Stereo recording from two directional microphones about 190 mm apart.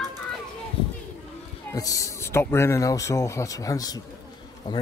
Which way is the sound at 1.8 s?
15° left (ahead or behind).